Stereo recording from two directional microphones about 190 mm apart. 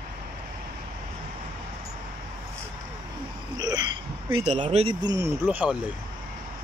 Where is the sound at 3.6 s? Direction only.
20° right (ahead or behind).